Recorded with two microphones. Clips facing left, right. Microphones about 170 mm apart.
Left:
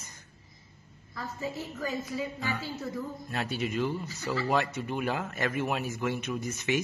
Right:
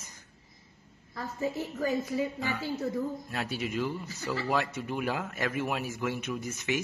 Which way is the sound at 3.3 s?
5° right (ahead or behind).